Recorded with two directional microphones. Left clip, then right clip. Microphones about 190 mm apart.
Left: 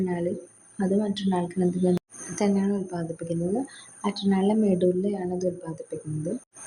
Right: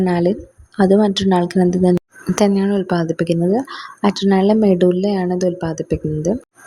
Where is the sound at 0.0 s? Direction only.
50° right (ahead or behind).